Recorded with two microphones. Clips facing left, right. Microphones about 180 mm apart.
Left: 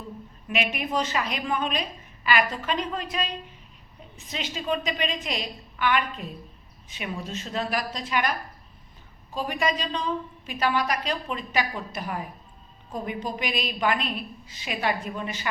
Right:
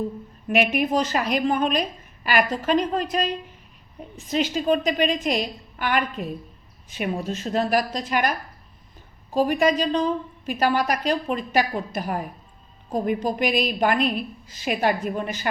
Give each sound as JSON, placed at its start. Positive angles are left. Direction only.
{"t": 0.4, "sound": "a woman's voice", "side_deg": -50}
{"t": 4.3, "sound": "a woman's voice", "side_deg": -45}
{"t": 9.3, "sound": "a woman's voice", "side_deg": -45}